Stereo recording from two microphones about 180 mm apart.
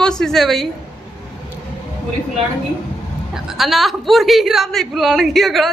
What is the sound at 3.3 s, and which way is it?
Speech, centre (ahead or behind).